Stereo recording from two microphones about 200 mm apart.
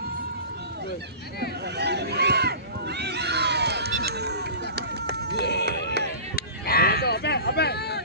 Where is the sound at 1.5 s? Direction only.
55° right (ahead or behind).